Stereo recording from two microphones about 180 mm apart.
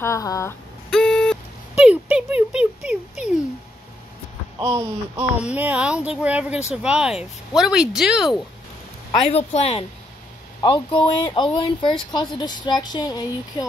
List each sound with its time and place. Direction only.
0.0 s speech: 15° left (ahead or behind)
0.8 s a sound: 5° left (ahead or behind)
4.6 s speech: 15° right (ahead or behind)
9.3 s speech: 35° left (ahead or behind)